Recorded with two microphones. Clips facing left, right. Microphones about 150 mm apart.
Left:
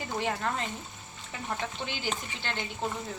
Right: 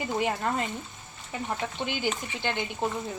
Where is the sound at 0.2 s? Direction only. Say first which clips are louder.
Right 2 dB; 10° right (ahead or behind).